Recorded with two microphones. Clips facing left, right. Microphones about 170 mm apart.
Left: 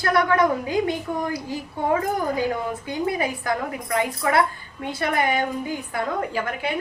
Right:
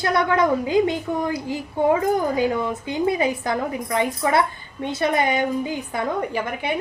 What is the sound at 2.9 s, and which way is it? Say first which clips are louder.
A woman's voice: right 4 dB; 20° right (ahead or behind).